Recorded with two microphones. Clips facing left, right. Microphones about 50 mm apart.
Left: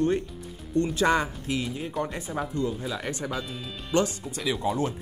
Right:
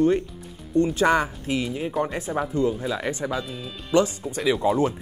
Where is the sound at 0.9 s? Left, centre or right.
Right.